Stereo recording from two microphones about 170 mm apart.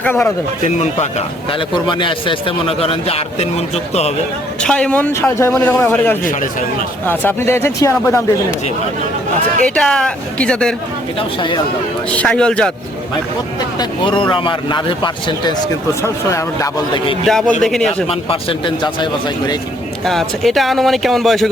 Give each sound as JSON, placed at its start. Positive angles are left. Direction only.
{"t": 0.0, "sound": "a man's voice", "side_deg": 15}
{"t": 0.6, "sound": "a man's voice", "side_deg": 40}
{"t": 1.5, "sound": "a man's voice", "side_deg": 30}
{"t": 4.6, "sound": "a man's voice", "side_deg": 5}
{"t": 9.6, "sound": "speech", "side_deg": 5}
{"t": 11.2, "sound": "a man's voice", "side_deg": 30}
{"t": 12.1, "sound": "speech", "side_deg": 5}
{"t": 13.7, "sound": "a man's voice", "side_deg": 30}
{"t": 17.2, "sound": "speech", "side_deg": 0}
{"t": 18.1, "sound": "a man's voice", "side_deg": 35}
{"t": 20.1, "sound": "speech", "side_deg": 0}